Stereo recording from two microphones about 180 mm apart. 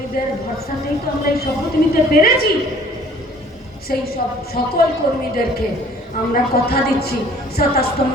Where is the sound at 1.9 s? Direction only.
55° left (ahead or behind).